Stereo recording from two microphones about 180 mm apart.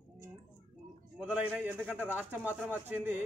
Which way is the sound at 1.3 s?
5° right (ahead or behind).